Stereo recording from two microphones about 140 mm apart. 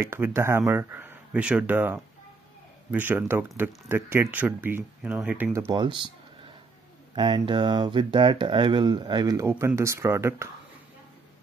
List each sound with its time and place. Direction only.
0.0 s speech: 15° right (ahead or behind)
5.5 s speech: 25° right (ahead or behind)
7.2 s speech: 35° right (ahead or behind)
9.5 s speech: 15° right (ahead or behind)